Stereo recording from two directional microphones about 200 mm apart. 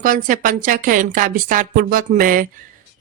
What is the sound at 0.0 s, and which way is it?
A woman's voice, 45° right (ahead or behind).